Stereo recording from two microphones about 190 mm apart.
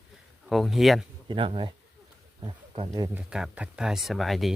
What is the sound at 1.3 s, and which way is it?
Speech, 30° right (ahead or behind).